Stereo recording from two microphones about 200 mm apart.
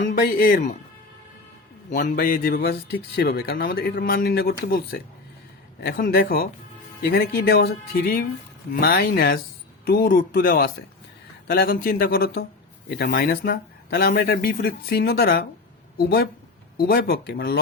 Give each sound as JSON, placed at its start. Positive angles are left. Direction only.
{"t": 0.0, "sound": "speech", "side_deg": 50}
{"t": 1.9, "sound": "speech", "side_deg": 45}